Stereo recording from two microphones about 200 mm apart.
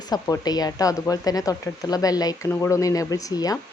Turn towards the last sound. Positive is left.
turn(degrees=20)  # may be behind; listen again after turning